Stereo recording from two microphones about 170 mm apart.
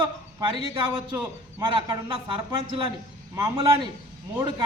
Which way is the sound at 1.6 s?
25° right (ahead or behind).